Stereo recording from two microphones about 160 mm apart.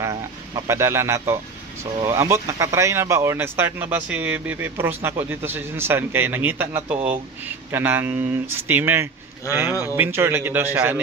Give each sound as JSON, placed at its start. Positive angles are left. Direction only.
{"t": 0.7, "sound": "speech", "side_deg": -15}